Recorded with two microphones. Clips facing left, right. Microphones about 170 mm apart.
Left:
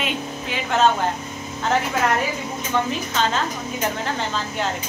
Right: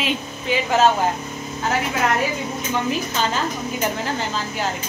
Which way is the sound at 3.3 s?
5° right (ahead or behind).